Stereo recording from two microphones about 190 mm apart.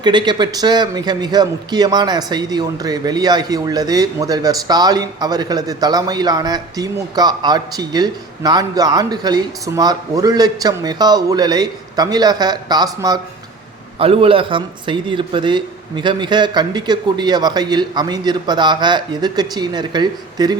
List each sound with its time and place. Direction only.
0.0 s a man's voice: 25° right (ahead or behind)